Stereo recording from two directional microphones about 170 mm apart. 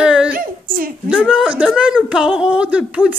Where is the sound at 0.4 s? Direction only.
55° right (ahead or behind).